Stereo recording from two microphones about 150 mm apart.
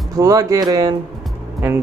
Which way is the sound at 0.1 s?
20° right (ahead or behind).